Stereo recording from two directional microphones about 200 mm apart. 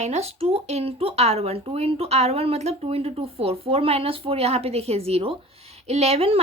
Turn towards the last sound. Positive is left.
turn(degrees=-30)  # may be behind; listen again after turning